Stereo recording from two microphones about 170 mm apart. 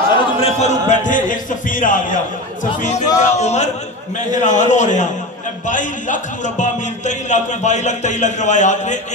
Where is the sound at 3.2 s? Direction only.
40° left (ahead or behind).